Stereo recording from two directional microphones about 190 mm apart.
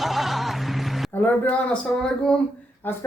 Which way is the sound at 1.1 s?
10° left (ahead or behind).